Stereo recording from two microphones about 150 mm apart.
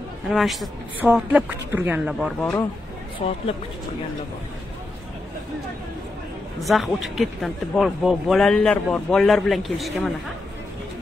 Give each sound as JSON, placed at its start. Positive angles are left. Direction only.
{"t": 0.3, "sound": "speech", "side_deg": 0}
{"t": 2.1, "sound": "speech", "side_deg": 0}
{"t": 3.2, "sound": "speech", "side_deg": 40}
{"t": 6.6, "sound": "speech", "side_deg": 0}